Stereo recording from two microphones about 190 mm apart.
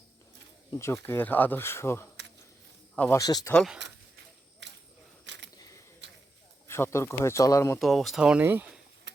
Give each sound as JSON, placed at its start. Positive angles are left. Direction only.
{"t": 0.7, "sound": "speech", "side_deg": 15}
{"t": 3.2, "sound": "speech", "side_deg": 20}
{"t": 3.5, "sound": "speech", "side_deg": 0}
{"t": 4.6, "sound": "a sound", "side_deg": -70}
{"t": 6.7, "sound": "speech", "side_deg": 15}
{"t": 7.8, "sound": "speech", "side_deg": 0}